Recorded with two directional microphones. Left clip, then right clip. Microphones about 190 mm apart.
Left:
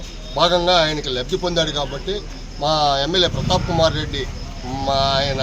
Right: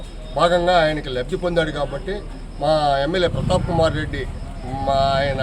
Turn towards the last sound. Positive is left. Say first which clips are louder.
# even
turn(degrees=-5)  # may be behind; listen again after turning